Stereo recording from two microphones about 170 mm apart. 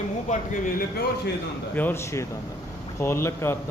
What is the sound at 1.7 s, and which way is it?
Speech, 10° left (ahead or behind).